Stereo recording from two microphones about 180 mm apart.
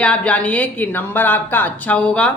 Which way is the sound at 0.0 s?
5° left (ahead or behind).